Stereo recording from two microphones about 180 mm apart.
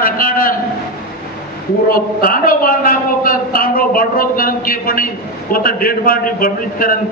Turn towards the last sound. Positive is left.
turn(degrees=50)  # may be behind; listen again after turning